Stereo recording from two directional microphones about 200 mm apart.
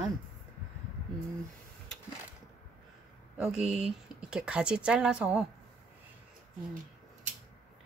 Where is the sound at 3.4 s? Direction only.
5° right (ahead or behind).